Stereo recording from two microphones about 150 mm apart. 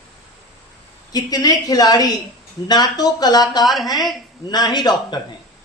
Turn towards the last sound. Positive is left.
turn(degrees=30)  # may be behind; listen again after turning